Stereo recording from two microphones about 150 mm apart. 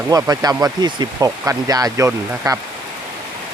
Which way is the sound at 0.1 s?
25° right (ahead or behind).